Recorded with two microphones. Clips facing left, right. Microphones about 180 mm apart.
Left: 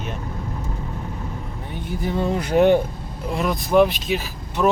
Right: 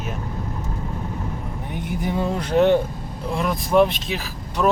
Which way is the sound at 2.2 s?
5° left (ahead or behind).